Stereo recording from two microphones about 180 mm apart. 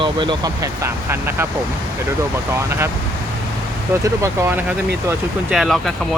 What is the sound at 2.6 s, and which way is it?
Speech, 15° right (ahead or behind).